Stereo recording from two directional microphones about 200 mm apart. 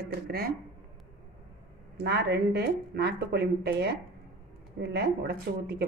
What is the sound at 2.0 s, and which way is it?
Speech, 55° right (ahead or behind).